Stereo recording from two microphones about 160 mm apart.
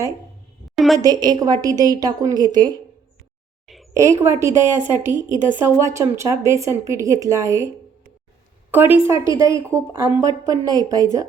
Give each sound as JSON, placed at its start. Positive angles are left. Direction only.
{"t": 0.9, "sound": "a woman's voice", "side_deg": -25}
{"t": 3.9, "sound": "a woman's voice", "side_deg": -20}
{"t": 5.1, "sound": "a woman's voice", "side_deg": 25}
{"t": 5.6, "sound": "a woman's voice", "side_deg": -15}
{"t": 8.7, "sound": "a woman's voice", "side_deg": -15}